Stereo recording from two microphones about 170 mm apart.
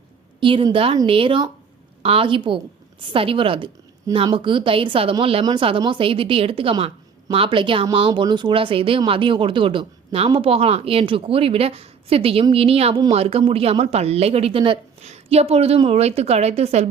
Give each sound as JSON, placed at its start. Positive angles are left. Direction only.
{"t": 0.3, "sound": "a woman's voice", "side_deg": -30}